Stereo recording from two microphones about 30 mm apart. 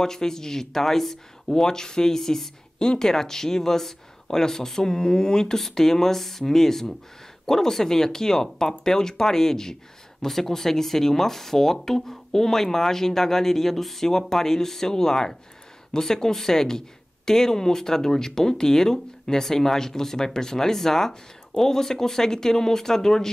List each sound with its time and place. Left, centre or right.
0.0 s speech: centre
2.8 s speech: left